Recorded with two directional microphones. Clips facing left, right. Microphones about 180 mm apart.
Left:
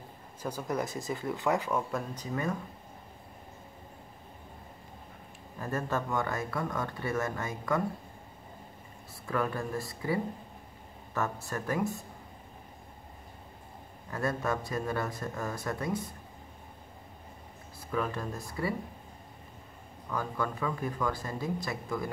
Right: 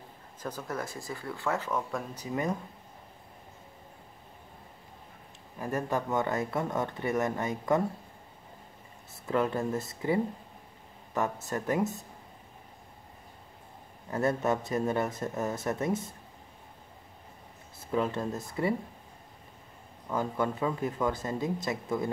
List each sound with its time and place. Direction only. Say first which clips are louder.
0.4 s speech: left 3 dB; 10° left (ahead or behind)
2.1 s speech: right 5 dB; 20° right (ahead or behind)
5.6 s speech: right 2 dB; 15° right (ahead or behind)
9.2 s speech: right 4 dB; 20° right (ahead or behind)
14.1 s speech: right 4 dB; 20° right (ahead or behind)
17.7 s speech: right 3 dB; 25° right (ahead or behind)
20.1 s speech: right 3 dB; 20° right (ahead or behind)